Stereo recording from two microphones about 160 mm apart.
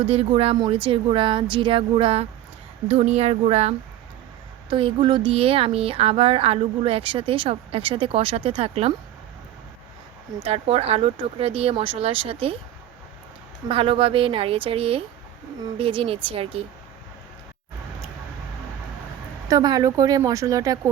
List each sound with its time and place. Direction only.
0.1 s speech: 40° right (ahead or behind)
10.4 s speech: 40° right (ahead or behind)
13.7 s speech: 35° right (ahead or behind)
19.5 s speech: 25° right (ahead or behind)